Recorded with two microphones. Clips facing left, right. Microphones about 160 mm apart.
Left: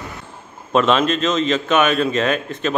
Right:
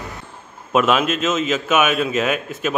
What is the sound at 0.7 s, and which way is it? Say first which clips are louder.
A man's voice: left 1 dB; 5° right (ahead or behind).